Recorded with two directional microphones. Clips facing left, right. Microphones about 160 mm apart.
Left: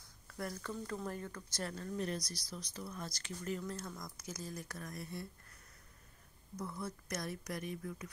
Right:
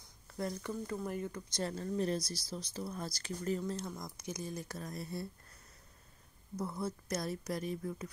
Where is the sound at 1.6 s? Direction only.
30° right (ahead or behind).